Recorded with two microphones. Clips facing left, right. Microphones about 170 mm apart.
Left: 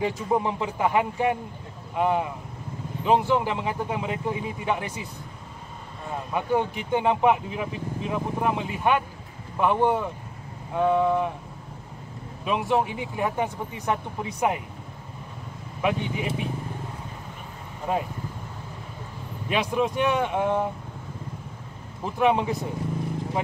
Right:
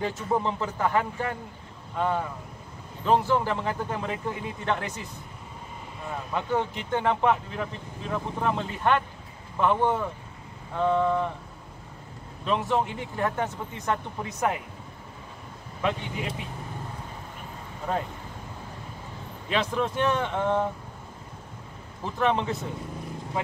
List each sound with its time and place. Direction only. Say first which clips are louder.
0.0 s speech: left 2 dB; 15° left (ahead or behind)
6.3 s speech: left 3 dB; 10° left (ahead or behind)
12.4 s speech: left 2 dB; 10° left (ahead or behind)
15.8 s speech: left 3 dB; 10° left (ahead or behind)
17.9 s speech: left 2 dB; 10° left (ahead or behind)
19.5 s speech: left 2 dB; 10° left (ahead or behind)
22.0 s speech: left 3 dB; 10° left (ahead or behind)